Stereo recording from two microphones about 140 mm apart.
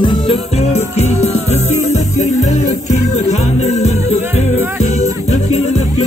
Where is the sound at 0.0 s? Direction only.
35° left (ahead or behind).